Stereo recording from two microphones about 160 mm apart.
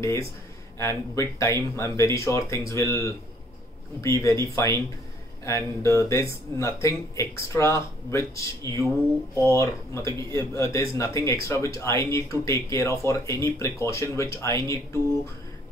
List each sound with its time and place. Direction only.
0.0 s speech: 20° left (ahead or behind)